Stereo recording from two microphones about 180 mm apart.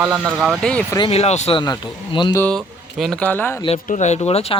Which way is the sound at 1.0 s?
35° left (ahead or behind).